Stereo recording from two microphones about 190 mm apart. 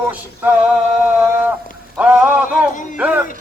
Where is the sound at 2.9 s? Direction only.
5° right (ahead or behind).